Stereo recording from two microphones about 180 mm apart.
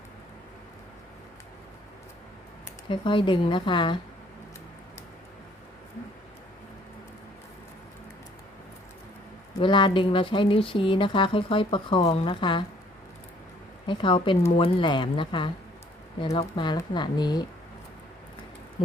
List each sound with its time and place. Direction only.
2.9 s speech: 30° left (ahead or behind)
9.6 s speech: 25° left (ahead or behind)
13.8 s speech: 25° left (ahead or behind)